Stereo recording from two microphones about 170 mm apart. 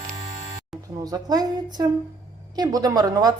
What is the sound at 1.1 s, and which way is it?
A woman's voice, 20° right (ahead or behind).